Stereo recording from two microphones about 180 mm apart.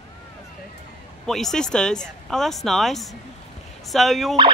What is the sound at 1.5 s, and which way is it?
Speech, 5° left (ahead or behind).